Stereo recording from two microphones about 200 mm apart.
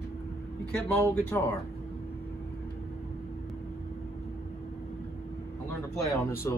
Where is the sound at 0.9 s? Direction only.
10° left (ahead or behind).